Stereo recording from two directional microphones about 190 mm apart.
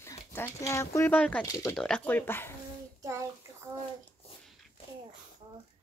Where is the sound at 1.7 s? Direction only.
5° left (ahead or behind).